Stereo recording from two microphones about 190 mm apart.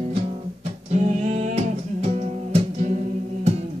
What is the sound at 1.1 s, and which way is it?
Music, 35° right (ahead or behind).